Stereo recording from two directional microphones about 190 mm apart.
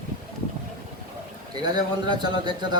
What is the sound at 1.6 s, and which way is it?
A man's voice, 20° right (ahead or behind).